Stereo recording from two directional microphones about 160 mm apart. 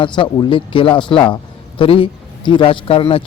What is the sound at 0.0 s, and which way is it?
Speech, 30° left (ahead or behind).